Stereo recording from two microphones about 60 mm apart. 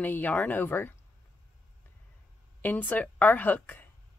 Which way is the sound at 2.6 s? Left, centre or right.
Left.